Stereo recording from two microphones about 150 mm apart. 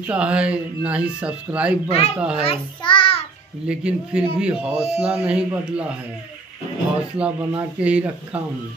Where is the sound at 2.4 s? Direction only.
35° left (ahead or behind).